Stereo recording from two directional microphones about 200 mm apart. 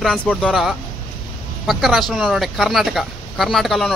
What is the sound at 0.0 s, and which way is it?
Speech, 5° left (ahead or behind).